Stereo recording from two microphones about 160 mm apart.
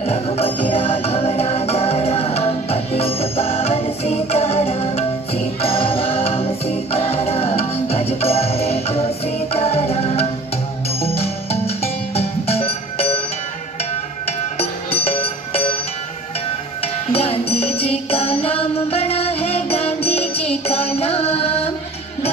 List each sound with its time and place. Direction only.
0.0 s music: 40° left (ahead or behind)
14.2 s music: 40° left (ahead or behind)
16.8 s music: 40° left (ahead or behind)